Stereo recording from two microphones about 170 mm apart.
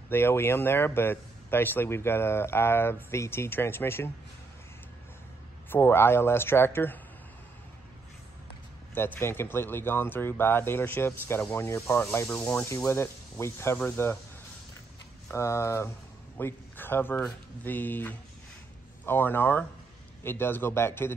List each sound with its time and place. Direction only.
0.1 s speech: 15° left (ahead or behind)
5.7 s speech: 15° left (ahead or behind)
8.9 s speech: 15° left (ahead or behind)
15.3 s speech: 15° left (ahead or behind)